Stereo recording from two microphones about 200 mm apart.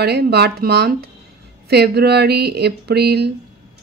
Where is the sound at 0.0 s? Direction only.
55° right (ahead or behind).